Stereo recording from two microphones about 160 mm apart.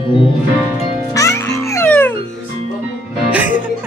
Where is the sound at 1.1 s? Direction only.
20° left (ahead or behind).